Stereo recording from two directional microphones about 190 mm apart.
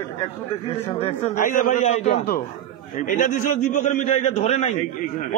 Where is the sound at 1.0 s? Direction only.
45° left (ahead or behind).